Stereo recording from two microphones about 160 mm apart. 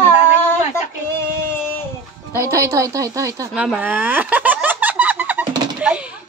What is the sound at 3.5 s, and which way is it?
Speech, 10° right (ahead or behind).